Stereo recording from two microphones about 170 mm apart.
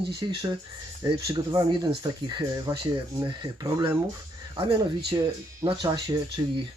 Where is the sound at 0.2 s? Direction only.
25° right (ahead or behind).